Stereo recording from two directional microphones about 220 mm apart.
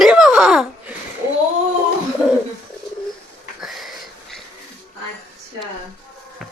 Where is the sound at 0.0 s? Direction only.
Centre (ahead or behind).